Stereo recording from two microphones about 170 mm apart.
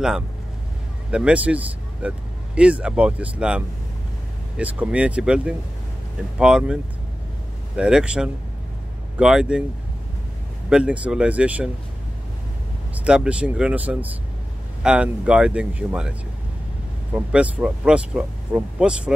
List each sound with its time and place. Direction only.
1.1 s speech: 5° right (ahead or behind)
10.7 s speech: 5° right (ahead or behind)
12.9 s speech: 5° right (ahead or behind)